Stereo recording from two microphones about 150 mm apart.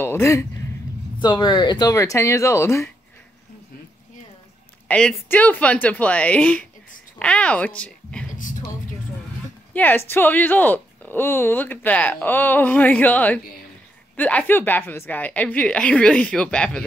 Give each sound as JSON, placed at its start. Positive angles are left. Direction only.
{"t": 0.0, "sound": "speech", "side_deg": 15}
{"t": 1.2, "sound": "speech", "side_deg": 30}
{"t": 4.8, "sound": "speech", "side_deg": 10}
{"t": 8.4, "sound": "a sound", "side_deg": 60}
{"t": 9.8, "sound": "speech", "side_deg": 15}